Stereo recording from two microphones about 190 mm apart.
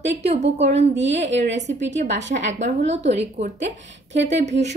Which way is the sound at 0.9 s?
70° right (ahead or behind).